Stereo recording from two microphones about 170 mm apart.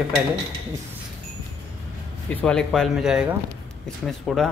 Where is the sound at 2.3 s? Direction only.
5° left (ahead or behind).